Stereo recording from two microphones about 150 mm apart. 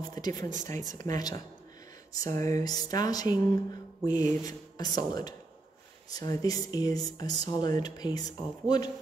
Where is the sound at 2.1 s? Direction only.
20° left (ahead or behind).